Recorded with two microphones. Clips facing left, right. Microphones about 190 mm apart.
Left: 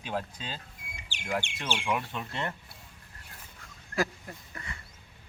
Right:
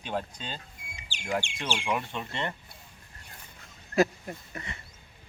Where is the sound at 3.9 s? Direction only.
20° right (ahead or behind).